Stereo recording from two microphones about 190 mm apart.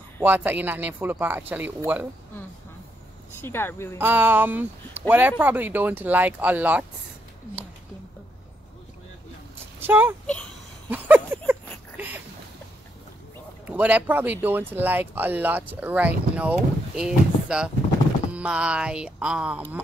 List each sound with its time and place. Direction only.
0.2 s speech: 10° right (ahead or behind)
3.3 s speech: 10° left (ahead or behind)
4.0 s speech: 10° right (ahead or behind)
9.8 s speech: 10° right (ahead or behind)
10.9 s a sound: 10° right (ahead or behind)
13.7 s speech: 10° right (ahead or behind)